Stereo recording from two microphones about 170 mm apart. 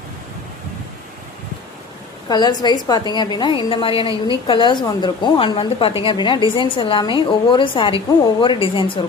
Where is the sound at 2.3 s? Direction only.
25° left (ahead or behind).